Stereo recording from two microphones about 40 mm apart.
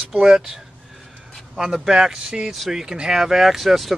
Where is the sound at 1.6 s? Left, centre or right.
Centre.